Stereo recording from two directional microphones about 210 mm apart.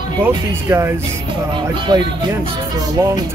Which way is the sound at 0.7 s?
15° right (ahead or behind).